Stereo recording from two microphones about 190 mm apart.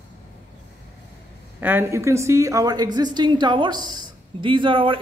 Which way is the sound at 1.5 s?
10° right (ahead or behind).